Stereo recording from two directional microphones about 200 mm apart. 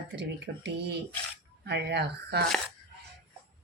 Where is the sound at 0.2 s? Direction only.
60° right (ahead or behind).